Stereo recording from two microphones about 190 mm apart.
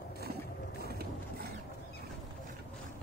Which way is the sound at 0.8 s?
55° right (ahead or behind).